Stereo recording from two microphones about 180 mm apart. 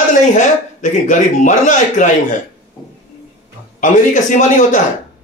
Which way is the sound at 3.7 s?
45° left (ahead or behind).